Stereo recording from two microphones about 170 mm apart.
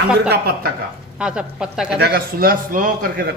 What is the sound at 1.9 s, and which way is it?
A man's voice, 70° right (ahead or behind).